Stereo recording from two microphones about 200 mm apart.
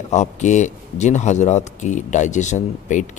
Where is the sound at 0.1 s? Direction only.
35° left (ahead or behind).